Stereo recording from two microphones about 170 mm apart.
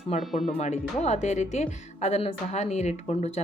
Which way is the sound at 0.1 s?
40° left (ahead or behind).